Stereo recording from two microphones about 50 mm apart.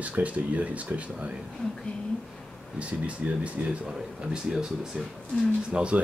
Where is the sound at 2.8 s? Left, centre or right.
Right.